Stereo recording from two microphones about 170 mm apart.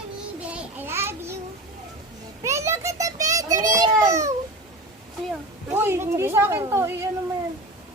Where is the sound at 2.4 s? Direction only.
15° right (ahead or behind).